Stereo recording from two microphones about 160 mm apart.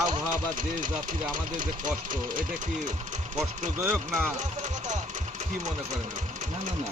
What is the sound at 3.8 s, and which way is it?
Speech, 15° right (ahead or behind).